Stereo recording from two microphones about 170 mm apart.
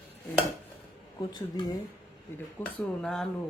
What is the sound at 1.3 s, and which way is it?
Speech, 25° left (ahead or behind).